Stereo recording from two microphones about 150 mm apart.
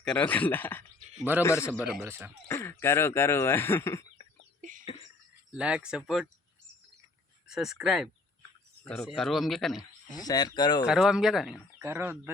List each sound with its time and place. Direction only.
0.0 s speech: 10° left (ahead or behind)
1.8 s speech: 15° right (ahead or behind)
2.5 s speech: 15° left (ahead or behind)
5.5 s a man's voice: 5° right (ahead or behind)
7.4 s a man's voice: 5° right (ahead or behind)
8.4 s bird: 10° left (ahead or behind)
9.0 s a man's voice: centre (ahead or behind)
10.1 s speech: 25° left (ahead or behind)
10.8 s a man's voice: 5° right (ahead or behind)
11.8 s speech: 15° right (ahead or behind)